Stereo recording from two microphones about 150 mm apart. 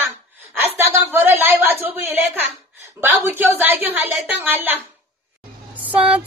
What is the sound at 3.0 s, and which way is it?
A woman's voice, 15° right (ahead or behind).